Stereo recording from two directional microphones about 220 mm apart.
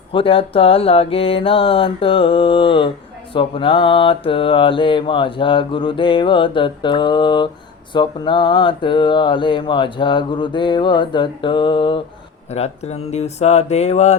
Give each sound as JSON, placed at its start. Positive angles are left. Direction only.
{"t": 0.1, "sound": "mantra", "side_deg": 25}